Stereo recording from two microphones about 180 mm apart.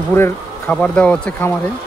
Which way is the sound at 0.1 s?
10° left (ahead or behind).